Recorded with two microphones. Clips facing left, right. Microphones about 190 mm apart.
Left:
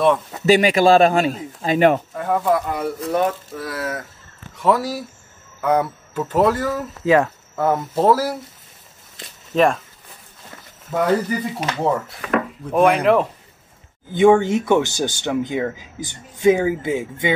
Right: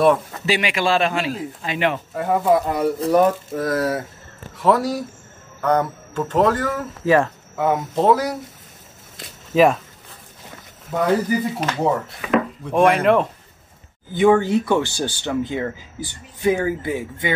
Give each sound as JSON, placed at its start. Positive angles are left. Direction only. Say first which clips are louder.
{"t": 0.5, "sound": "a man's voice", "louder": "left 7 dB", "side_deg": 40}
{"t": 2.1, "sound": "speech", "louder": "right 2 dB", "side_deg": -15}
{"t": 2.8, "sound": "speech", "louder": "right 4 dB", "side_deg": -40}
{"t": 4.6, "sound": "speech", "louder": "right 1 dB", "side_deg": 0}
{"t": 7.2, "sound": "speech", "louder": "left 1 dB", "side_deg": 0}
{"t": 9.1, "sound": "a sound", "louder": "right 2 dB", "side_deg": -5}
{"t": 10.9, "sound": "speech", "louder": "even", "side_deg": -5}
{"t": 14.1, "sound": "speech", "louder": "left 2 dB", "side_deg": 20}